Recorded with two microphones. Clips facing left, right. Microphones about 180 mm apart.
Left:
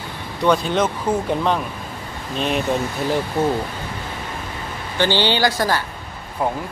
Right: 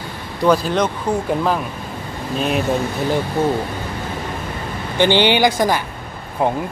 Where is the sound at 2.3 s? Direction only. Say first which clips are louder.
Right 2 dB; 5° right (ahead or behind).